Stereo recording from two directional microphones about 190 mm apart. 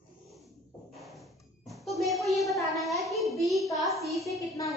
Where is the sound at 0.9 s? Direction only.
Centre (ahead or behind).